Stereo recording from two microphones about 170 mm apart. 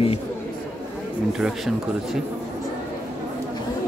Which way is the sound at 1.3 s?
Centre (ahead or behind).